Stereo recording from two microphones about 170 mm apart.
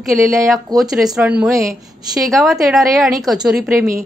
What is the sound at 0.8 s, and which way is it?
Speech, 5° right (ahead or behind).